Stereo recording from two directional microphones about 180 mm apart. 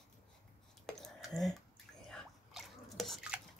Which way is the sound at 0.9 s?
Centre (ahead or behind).